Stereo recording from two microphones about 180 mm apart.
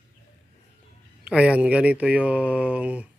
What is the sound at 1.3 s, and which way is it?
Speech, 5° right (ahead or behind).